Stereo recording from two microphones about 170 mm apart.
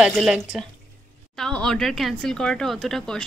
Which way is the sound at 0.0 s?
5° right (ahead or behind).